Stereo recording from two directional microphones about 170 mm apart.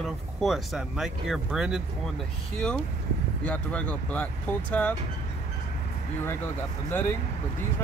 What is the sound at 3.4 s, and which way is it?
Speech, 5° left (ahead or behind).